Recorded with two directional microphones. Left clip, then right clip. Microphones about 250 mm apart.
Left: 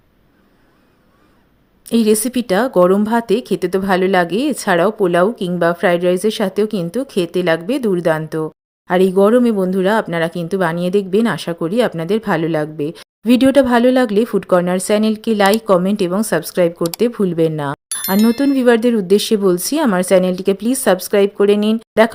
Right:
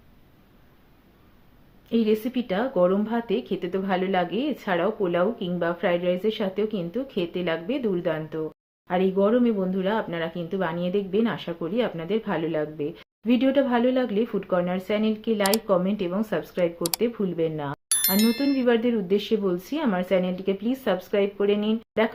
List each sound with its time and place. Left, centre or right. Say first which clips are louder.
1.9 s speech: left 9 dB; left